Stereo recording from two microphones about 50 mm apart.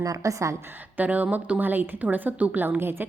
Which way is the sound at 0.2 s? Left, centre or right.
Right.